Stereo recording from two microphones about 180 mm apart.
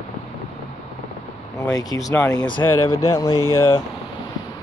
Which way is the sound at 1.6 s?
20° left (ahead or behind).